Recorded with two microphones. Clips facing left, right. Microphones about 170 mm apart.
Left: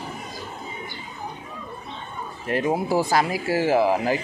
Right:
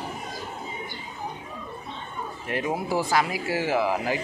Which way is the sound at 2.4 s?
35° left (ahead or behind).